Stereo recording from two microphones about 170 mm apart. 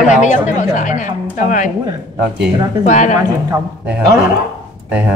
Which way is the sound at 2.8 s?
45° left (ahead or behind).